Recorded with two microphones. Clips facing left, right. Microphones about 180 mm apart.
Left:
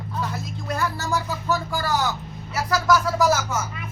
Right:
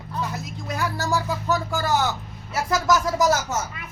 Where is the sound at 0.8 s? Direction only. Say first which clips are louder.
Right 2 dB; 15° right (ahead or behind).